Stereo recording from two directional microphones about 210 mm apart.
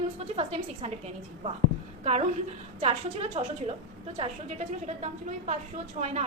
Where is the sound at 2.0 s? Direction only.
30° right (ahead or behind).